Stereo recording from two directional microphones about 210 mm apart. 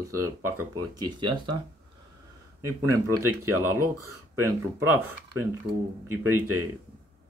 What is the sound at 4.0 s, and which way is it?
Speech, 90° right.